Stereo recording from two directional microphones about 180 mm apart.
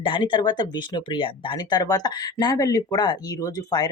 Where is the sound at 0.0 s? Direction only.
25° left (ahead or behind).